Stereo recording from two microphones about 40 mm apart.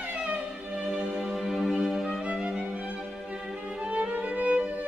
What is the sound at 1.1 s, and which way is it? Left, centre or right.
Music, centre.